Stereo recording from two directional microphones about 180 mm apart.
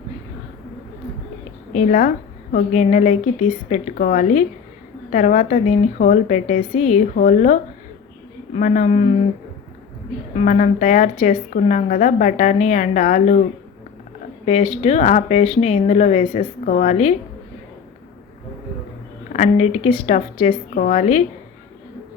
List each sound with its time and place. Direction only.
1.8 s a woman's voice: 45° left (ahead or behind)
10.3 s a woman's voice: 45° left (ahead or behind)
14.4 s a woman's voice: 35° left (ahead or behind)
19.3 s a woman's voice: 40° left (ahead or behind)